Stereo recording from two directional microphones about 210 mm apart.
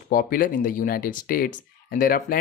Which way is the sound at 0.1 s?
45° left (ahead or behind).